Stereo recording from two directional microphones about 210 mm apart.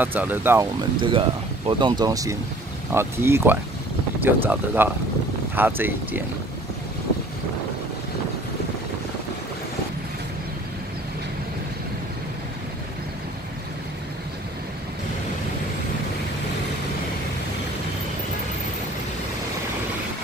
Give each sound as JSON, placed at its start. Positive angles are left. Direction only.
{"t": 0.0, "sound": "speech", "side_deg": -10}